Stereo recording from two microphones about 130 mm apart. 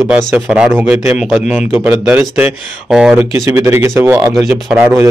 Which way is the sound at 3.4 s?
20° right (ahead or behind).